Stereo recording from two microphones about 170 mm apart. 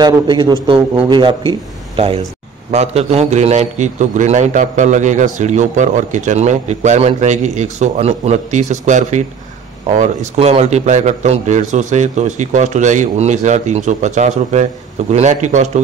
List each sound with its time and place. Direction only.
0.0 s a man's voice: 25° right (ahead or behind); by 15.8 s 45° right (ahead or behind)